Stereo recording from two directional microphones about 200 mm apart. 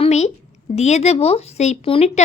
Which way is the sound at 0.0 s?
35° left (ahead or behind).